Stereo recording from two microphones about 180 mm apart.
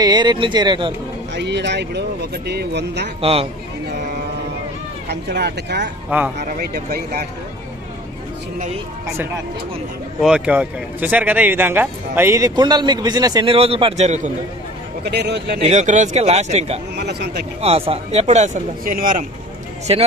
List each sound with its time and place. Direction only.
0.0 s speech: 25° right (ahead or behind)
1.3 s speech: 75° right (ahead or behind)
3.2 s speech: 30° right (ahead or behind)
5.0 s speech: 65° right (ahead or behind)
6.0 s speech: 10° right (ahead or behind)
6.3 s speech: 50° right (ahead or behind)
9.0 s speech: 15° right (ahead or behind)
10.2 s speech: 5° right (ahead or behind); by 14.3 s 40° right (ahead or behind)
15.0 s speech: 65° right (ahead or behind)
15.6 s speech: 40° right (ahead or behind)
16.9 s speech: 65° right (ahead or behind)
17.6 s speech: 35° right (ahead or behind); by 19.2 s 50° right (ahead or behind)
19.9 s speech: 35° right (ahead or behind)